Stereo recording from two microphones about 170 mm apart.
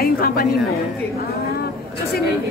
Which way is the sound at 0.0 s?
60° left (ahead or behind).